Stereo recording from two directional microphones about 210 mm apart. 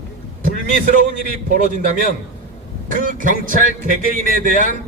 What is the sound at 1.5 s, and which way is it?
Speech, 40° right (ahead or behind).